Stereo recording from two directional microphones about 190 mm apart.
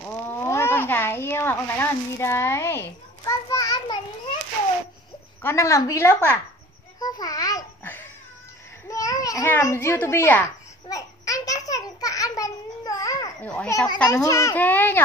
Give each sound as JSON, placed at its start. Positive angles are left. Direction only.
{"t": 0.4, "sound": "a child's voice", "side_deg": 15}
{"t": 5.4, "sound": "a woman's voice", "side_deg": 15}
{"t": 7.0, "sound": "babbling", "side_deg": 20}
{"t": 13.6, "sound": "a woman's voice", "side_deg": 15}